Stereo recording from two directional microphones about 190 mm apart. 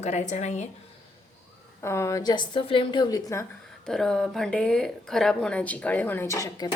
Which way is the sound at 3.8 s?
Centre (ahead or behind).